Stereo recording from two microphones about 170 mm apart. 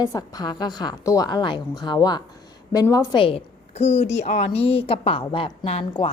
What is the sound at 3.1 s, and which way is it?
A woman's voice, 30° left (ahead or behind).